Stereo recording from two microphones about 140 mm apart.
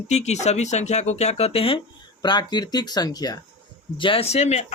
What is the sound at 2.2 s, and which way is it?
Speech, 30° left (ahead or behind).